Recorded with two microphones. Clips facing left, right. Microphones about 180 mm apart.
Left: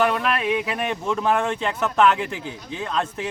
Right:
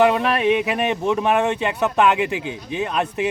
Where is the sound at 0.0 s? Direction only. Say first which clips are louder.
Right 5 dB; 20° right (ahead or behind).